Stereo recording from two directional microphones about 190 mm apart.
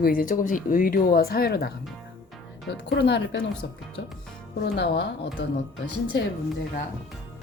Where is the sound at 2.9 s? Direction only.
65° left (ahead or behind).